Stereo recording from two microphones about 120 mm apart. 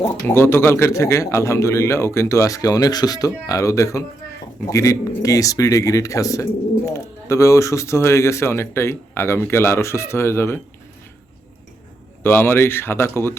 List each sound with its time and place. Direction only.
0.3 s speech: 20° left (ahead or behind)
12.2 s speech: 20° left (ahead or behind)